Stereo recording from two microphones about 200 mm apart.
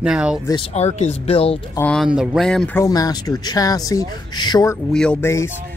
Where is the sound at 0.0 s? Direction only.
5° right (ahead or behind).